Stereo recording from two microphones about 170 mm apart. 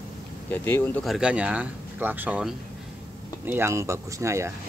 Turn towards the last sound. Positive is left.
turn(degrees=-15)  # may be behind; listen again after turning